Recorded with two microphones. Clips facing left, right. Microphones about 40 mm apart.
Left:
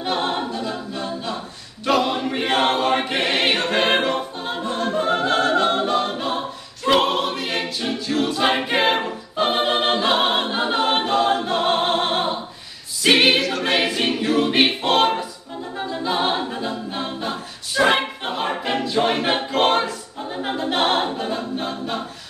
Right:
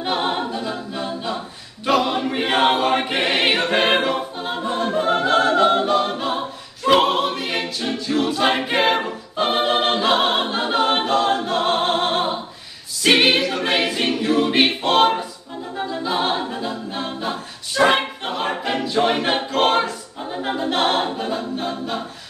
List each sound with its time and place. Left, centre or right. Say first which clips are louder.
0.0 s a capella: right 1 dB; centre
1.9 s choir: right 1 dB; centre
13.0 s a capella: even; centre